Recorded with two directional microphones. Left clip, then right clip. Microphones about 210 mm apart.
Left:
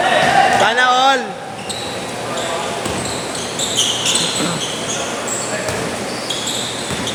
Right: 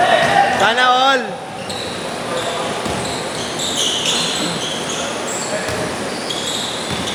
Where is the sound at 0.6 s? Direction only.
15° right (ahead or behind).